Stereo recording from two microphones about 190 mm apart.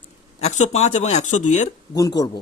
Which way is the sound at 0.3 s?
35° left (ahead or behind).